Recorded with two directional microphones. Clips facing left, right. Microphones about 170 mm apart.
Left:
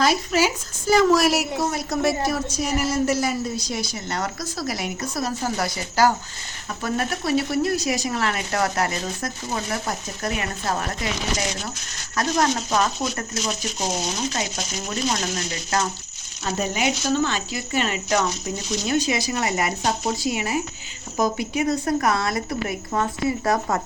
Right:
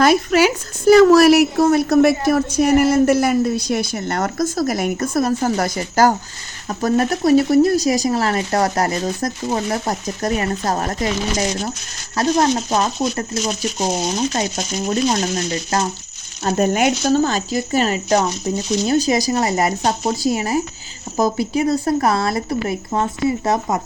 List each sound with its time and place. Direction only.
0.0 s a woman's voice: 60° right (ahead or behind); by 11.7 s 40° right (ahead or behind)
12.1 s speech: 30° right (ahead or behind)
16.4 s speech: 50° right (ahead or behind); by 23.8 s 20° right (ahead or behind)